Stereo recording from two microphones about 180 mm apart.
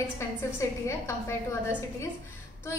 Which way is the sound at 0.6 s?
15° left (ahead or behind).